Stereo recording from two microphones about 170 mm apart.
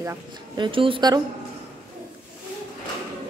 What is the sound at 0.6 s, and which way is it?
Speech, 30° right (ahead or behind).